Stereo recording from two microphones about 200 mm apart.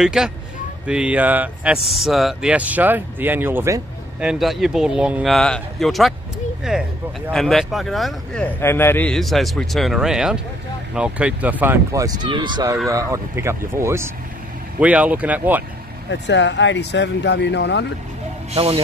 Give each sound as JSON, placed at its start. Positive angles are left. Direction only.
{"t": 0.0, "sound": "speech", "side_deg": -5}
{"t": 8.5, "sound": "speech", "side_deg": 10}
{"t": 16.1, "sound": "speech", "side_deg": 65}
{"t": 18.5, "sound": "speech", "side_deg": -30}